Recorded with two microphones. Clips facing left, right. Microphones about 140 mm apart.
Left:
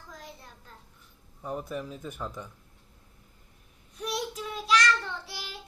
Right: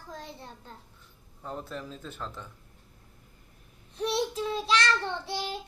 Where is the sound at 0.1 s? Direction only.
30° right (ahead or behind).